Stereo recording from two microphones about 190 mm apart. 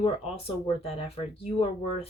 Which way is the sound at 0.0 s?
30° left (ahead or behind).